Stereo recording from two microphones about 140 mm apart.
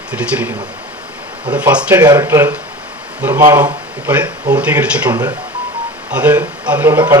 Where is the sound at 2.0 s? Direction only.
30° right (ahead or behind).